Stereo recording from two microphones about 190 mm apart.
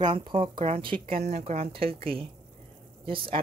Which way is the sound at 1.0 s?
40° right (ahead or behind).